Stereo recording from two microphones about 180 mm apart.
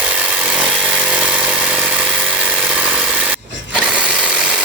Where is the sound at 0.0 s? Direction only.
5° right (ahead or behind).